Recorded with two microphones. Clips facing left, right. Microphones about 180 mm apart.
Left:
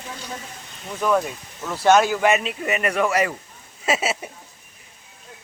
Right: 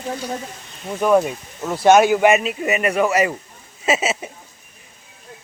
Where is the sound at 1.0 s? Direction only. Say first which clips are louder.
Right 5 dB; 25° right (ahead or behind).